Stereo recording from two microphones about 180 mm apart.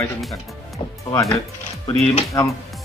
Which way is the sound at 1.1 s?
15° left (ahead or behind).